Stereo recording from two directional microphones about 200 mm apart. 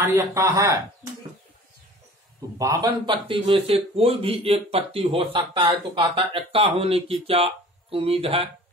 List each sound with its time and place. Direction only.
0.0 s speech: 15° right (ahead or behind)
2.6 s speech: 15° right (ahead or behind)